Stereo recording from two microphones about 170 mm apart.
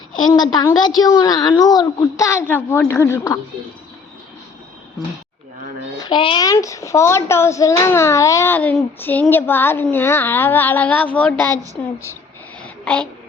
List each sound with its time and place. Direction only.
0.2 s a woman's voice: 25° left (ahead or behind)
6.0 s a child's voice: 25° left (ahead or behind); by 11.5 s 10° left (ahead or behind)
11.5 s a woman's voice: 20° right (ahead or behind)
12.6 s a sound: 5° left (ahead or behind)